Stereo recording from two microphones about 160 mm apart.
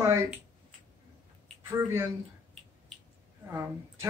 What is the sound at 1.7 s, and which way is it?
Speech, 15° right (ahead or behind).